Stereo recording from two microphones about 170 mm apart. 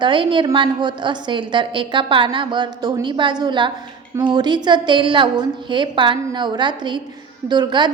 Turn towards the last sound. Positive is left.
turn(degrees=-25)  # may be behind; listen again after turning